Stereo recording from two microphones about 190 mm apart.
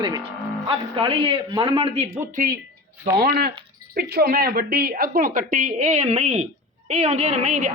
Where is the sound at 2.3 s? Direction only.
45° right (ahead or behind).